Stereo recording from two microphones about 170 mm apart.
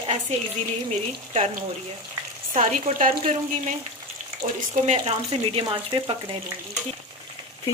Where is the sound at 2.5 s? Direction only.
45° right (ahead or behind).